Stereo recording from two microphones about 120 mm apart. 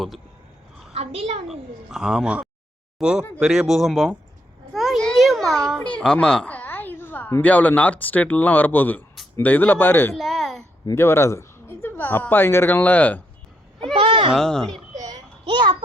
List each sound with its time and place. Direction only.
0.9 s a woman's voice: 60° right (ahead or behind)
1.5 s speech: 5° right (ahead or behind)
4.7 s a sound: centre (ahead or behind); by 7.4 s 20° left (ahead or behind)
7.4 s speech: 15° left (ahead or behind)
10.2 s a woman's voice: centre (ahead or behind)
10.9 s speech: 20° left (ahead or behind)
13.9 s sheep: 50° right (ahead or behind)
14.3 s speech: 5° left (ahead or behind)
15.4 s a child's voice: 40° right (ahead or behind)